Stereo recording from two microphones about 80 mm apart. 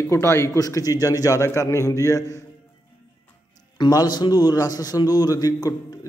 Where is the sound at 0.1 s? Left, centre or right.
Left.